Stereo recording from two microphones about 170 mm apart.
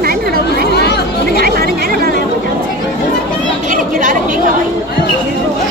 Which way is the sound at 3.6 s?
50° right (ahead or behind).